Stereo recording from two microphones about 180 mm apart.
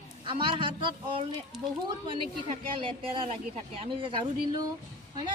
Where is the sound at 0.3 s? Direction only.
25° right (ahead or behind).